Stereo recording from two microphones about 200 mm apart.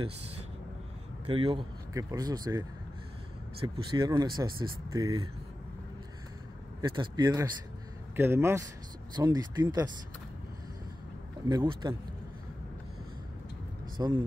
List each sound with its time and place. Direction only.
1.3 s speech: 25° right (ahead or behind)
3.6 s speech: 25° right (ahead or behind)
6.8 s speech: 20° right (ahead or behind)
11.4 s speech: 20° right (ahead or behind)
13.9 s speech: 20° right (ahead or behind)